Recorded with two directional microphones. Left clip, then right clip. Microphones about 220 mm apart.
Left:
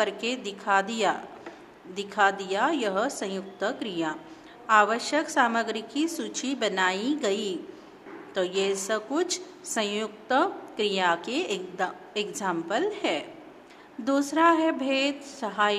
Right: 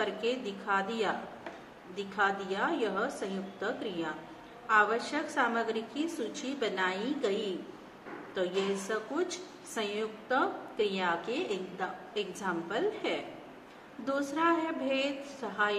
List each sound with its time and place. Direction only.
0.0 s a woman's voice: 50° left (ahead or behind)